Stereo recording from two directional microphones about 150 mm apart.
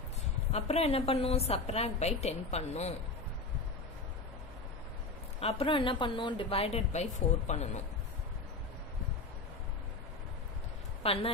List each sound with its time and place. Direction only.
0.5 s a woman's voice: 45° left (ahead or behind)
5.4 s speech: 40° left (ahead or behind)
11.0 s speech: 40° left (ahead or behind)